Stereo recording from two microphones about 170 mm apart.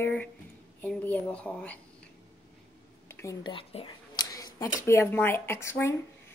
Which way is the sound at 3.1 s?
15° left (ahead or behind).